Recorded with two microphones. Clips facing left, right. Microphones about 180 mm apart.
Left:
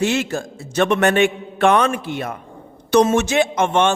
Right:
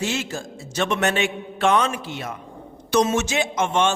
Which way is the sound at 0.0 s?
60° left (ahead or behind).